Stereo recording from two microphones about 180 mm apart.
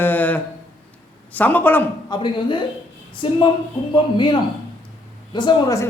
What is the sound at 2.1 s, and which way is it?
A woman's voice, 25° left (ahead or behind).